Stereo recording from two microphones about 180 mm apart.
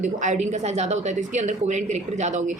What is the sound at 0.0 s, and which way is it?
A woman's voice, 40° right (ahead or behind).